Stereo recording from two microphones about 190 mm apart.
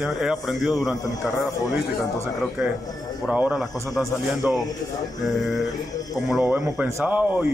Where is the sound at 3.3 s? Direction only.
5° right (ahead or behind).